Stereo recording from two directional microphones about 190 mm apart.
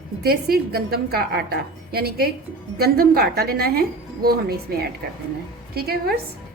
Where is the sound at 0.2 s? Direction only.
55° right (ahead or behind).